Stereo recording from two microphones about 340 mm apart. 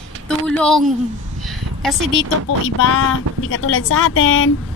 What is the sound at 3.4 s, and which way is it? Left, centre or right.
A woman's voice, left.